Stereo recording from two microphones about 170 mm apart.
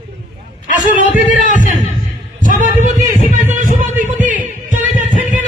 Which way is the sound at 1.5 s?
50° right (ahead or behind).